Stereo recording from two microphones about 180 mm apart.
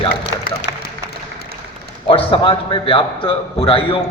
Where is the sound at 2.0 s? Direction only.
30° left (ahead or behind).